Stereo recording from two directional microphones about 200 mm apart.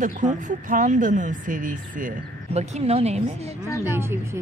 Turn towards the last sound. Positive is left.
turn(degrees=-10)  # may be behind; listen again after turning